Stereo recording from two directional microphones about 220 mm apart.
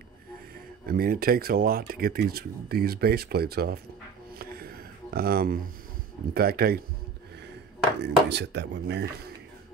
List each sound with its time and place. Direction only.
0.8 s speech: 45° right (ahead or behind)
4.4 s a sound: 45° right (ahead or behind)
6.3 s speech: 45° right (ahead or behind)
8.0 s speech: 50° right (ahead or behind)